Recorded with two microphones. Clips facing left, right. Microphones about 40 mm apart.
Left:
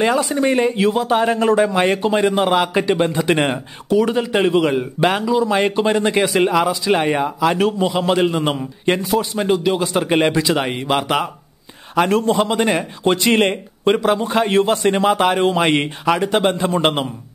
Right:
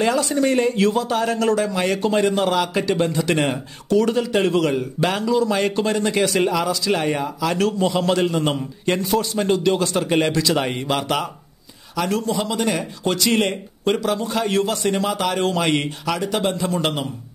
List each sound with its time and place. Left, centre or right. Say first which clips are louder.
0.0 s a man's voice: left 2 dB; centre
11.9 s speech: left 6 dB; left